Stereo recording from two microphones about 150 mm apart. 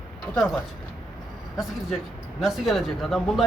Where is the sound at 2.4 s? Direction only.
Centre (ahead or behind).